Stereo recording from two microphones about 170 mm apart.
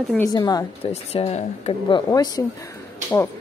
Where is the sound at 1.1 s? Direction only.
40° left (ahead or behind); by 2.4 s 20° left (ahead or behind).